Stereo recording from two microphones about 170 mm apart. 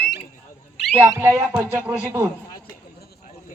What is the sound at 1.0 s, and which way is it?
Music, 15° right (ahead or behind).